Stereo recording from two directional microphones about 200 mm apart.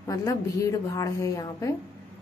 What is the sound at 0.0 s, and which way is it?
Speech, 15° left (ahead or behind).